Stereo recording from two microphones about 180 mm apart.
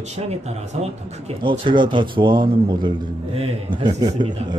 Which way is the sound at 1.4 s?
25° right (ahead or behind).